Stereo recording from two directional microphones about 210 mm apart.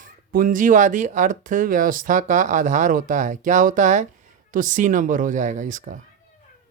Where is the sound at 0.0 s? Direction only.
40° right (ahead or behind).